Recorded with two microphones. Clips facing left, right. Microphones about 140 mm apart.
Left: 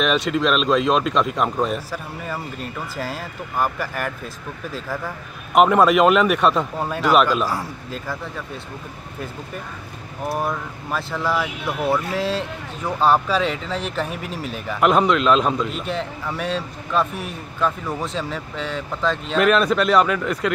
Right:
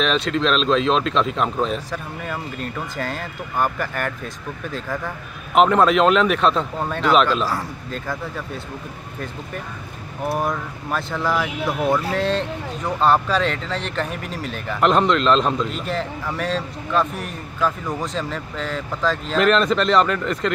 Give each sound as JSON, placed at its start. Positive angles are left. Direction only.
{"t": 0.0, "sound": "speech", "side_deg": 10}
{"t": 10.2, "sound": "speech", "side_deg": 0}